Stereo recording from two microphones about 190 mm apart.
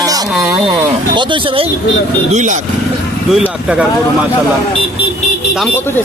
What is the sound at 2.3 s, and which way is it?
Speech, 40° right (ahead or behind).